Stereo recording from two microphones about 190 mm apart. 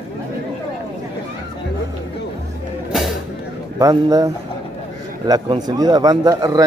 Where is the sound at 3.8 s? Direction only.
20° right (ahead or behind).